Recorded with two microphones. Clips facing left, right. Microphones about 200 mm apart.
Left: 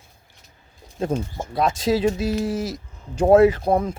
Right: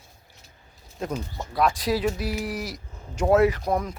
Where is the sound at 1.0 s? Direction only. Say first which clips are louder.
Left 6 dB; 30° left (ahead or behind).